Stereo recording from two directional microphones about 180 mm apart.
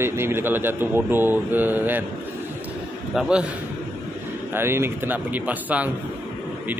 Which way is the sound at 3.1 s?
5° right (ahead or behind).